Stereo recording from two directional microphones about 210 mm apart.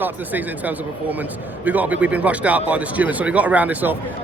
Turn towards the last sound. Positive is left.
turn(degrees=-10)  # may be behind; listen again after turning